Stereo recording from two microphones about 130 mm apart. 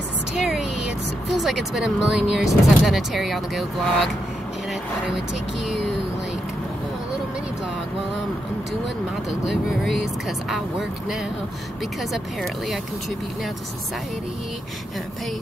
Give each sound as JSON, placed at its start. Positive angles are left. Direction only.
{"t": 0.4, "sound": "a sound", "side_deg": -5}
{"t": 1.4, "sound": "speech", "side_deg": 0}
{"t": 9.5, "sound": "speech", "side_deg": 0}